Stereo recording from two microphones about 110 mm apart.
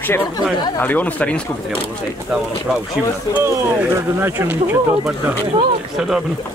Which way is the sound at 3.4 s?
25° right (ahead or behind).